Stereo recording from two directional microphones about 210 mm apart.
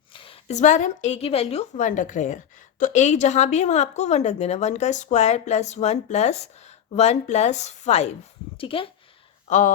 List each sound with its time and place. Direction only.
0.1 s a woman's voice: 25° left (ahead or behind)
9.5 s a woman's voice: 35° left (ahead or behind)